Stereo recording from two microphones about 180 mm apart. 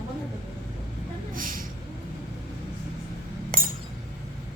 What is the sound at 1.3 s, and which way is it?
Vehicle, 50° right (ahead or behind).